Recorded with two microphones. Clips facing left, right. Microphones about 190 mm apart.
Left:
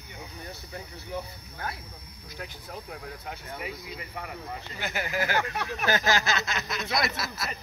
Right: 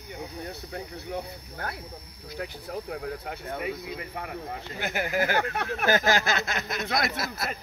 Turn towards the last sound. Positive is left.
turn(degrees=-50)  # may be behind; listen again after turning